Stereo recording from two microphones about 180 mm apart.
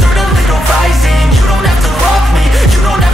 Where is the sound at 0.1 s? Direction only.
Centre (ahead or behind).